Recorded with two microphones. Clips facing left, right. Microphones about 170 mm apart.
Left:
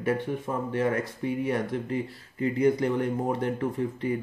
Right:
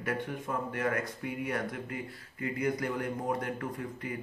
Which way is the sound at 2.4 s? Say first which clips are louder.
Left 8 dB; 30° left (ahead or behind).